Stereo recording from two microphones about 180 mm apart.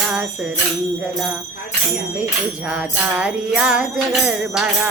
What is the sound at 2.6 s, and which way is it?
Jingle bell, 5° right (ahead or behind).